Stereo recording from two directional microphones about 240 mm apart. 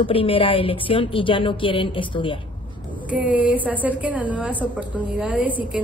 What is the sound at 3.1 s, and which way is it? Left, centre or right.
A woman's voice, centre.